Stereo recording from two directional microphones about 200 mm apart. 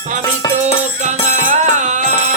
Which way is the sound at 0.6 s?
35° right (ahead or behind).